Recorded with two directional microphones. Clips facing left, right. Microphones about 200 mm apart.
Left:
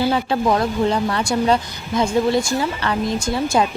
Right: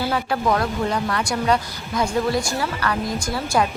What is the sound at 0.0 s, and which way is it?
Speech, 25° left (ahead or behind).